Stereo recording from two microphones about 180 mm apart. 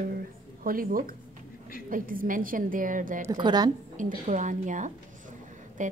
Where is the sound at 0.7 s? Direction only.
50° right (ahead or behind).